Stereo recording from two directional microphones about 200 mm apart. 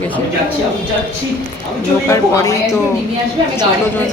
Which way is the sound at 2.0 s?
15° left (ahead or behind).